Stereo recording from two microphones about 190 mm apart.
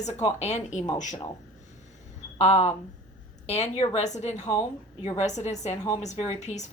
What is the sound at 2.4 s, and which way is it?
A woman's voice, 35° left (ahead or behind).